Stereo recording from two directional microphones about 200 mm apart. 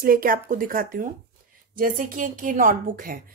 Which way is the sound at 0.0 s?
45° right (ahead or behind).